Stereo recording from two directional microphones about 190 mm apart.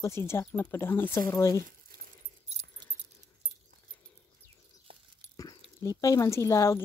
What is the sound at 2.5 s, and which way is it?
Keys jangling, 35° right (ahead or behind).